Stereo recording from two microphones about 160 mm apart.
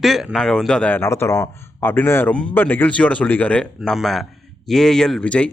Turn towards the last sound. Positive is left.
turn(degrees=5)  # may be behind; listen again after turning